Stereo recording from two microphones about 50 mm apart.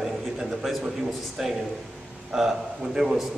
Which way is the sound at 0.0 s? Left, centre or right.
Centre.